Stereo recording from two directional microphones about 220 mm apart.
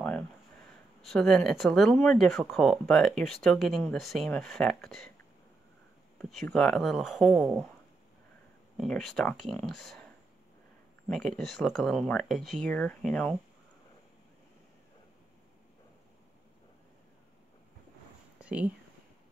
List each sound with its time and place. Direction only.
1.0 s speech: centre (ahead or behind)
6.1 s speech: 5° left (ahead or behind)
8.7 s speech: centre (ahead or behind)
11.1 s speech: centre (ahead or behind)
18.4 s a sound: 5° right (ahead or behind)